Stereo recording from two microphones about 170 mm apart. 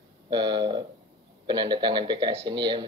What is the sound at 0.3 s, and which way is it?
Speech, 25° right (ahead or behind).